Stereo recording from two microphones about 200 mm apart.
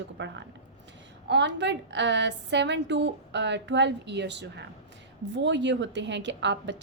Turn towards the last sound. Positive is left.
turn(degrees=-60)  # may be behind; listen again after turning